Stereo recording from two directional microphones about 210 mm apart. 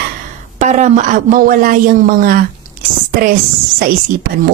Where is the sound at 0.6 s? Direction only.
35° right (ahead or behind).